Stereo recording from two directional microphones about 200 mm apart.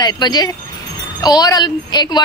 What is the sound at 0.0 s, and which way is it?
A woman's voice, 20° left (ahead or behind).